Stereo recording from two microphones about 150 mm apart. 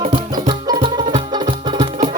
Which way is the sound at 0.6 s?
30° right (ahead or behind).